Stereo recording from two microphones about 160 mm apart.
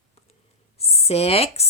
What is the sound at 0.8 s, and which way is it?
Speech, 40° left (ahead or behind).